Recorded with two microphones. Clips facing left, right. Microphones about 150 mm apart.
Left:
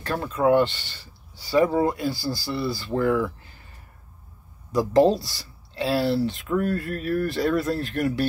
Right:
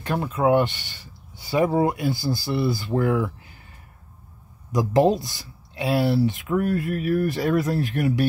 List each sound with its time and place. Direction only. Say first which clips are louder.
0.0 s speech: even; 15° right (ahead or behind)
4.7 s speech: left 1 dB; 15° right (ahead or behind)